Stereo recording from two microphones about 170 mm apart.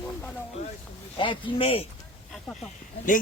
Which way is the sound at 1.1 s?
30° left (ahead or behind).